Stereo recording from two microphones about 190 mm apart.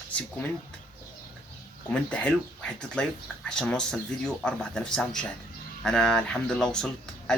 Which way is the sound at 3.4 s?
5° left (ahead or behind).